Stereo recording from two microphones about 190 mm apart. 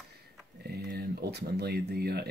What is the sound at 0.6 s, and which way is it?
Speech, 55° right (ahead or behind).